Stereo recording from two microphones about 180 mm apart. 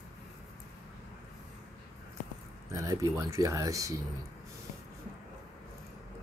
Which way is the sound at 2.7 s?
15° right (ahead or behind).